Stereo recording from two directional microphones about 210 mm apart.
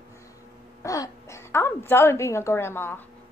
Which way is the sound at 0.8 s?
15° left (ahead or behind).